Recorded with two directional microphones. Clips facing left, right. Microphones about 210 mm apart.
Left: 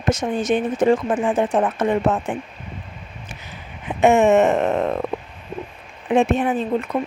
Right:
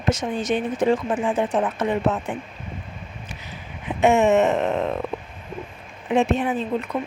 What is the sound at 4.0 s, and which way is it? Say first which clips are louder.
Speech: left 3 dB; 50° left (ahead or behind).